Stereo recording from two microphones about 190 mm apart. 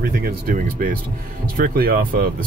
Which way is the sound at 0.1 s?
45° right (ahead or behind).